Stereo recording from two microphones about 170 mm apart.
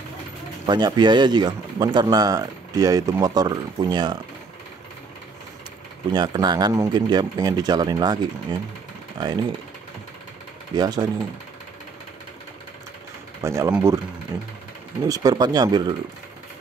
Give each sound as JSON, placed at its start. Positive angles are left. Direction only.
{"t": 0.7, "sound": "speech", "side_deg": -25}
{"t": 6.1, "sound": "speech", "side_deg": -25}
{"t": 10.8, "sound": "speech", "side_deg": -25}
{"t": 13.4, "sound": "speech", "side_deg": -15}